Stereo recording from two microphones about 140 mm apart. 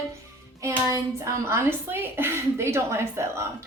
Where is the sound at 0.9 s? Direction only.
20° right (ahead or behind).